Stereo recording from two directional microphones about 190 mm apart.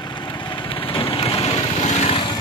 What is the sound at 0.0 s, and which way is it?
Lawn mower, 25° left (ahead or behind).